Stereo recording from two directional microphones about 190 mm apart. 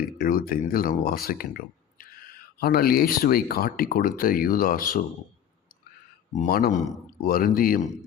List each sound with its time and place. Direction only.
0.2 s speech: 50° left (ahead or behind)
6.3 s speech: 45° left (ahead or behind)